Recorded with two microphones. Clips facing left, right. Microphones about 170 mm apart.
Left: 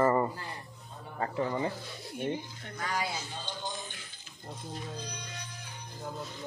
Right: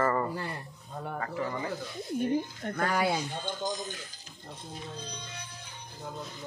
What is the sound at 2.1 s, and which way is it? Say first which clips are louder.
Speech: right 6 dB; 50° right (ahead or behind).